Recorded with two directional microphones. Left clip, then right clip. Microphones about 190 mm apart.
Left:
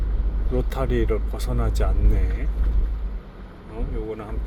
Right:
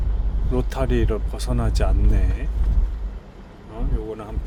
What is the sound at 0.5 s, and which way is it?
Speech, 25° right (ahead or behind).